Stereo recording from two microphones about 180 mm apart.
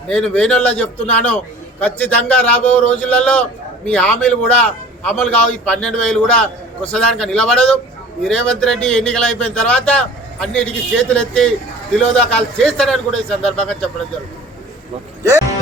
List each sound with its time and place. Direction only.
0.1 s a man's voice: 5° left (ahead or behind)
15.2 s music: 15° right (ahead or behind)